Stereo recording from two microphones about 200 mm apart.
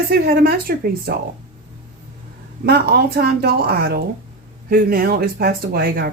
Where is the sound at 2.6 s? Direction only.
55° right (ahead or behind).